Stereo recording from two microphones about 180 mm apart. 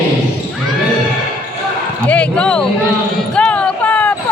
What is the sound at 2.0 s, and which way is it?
Basketball bounce, 5° left (ahead or behind).